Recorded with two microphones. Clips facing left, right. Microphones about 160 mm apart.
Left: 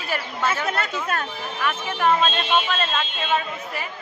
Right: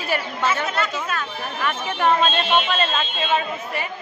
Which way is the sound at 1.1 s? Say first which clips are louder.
Left 1 dB; 55° left (ahead or behind).